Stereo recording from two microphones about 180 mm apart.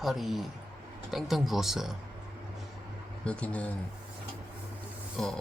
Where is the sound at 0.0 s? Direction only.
Centre (ahead or behind).